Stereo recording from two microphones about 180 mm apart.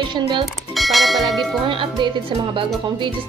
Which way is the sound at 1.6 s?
25° right (ahead or behind).